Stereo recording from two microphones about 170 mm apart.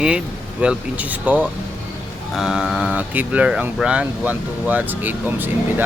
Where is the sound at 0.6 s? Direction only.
5° right (ahead or behind).